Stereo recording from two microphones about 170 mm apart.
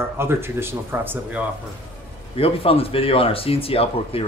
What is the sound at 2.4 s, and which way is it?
Speech, 35° left (ahead or behind).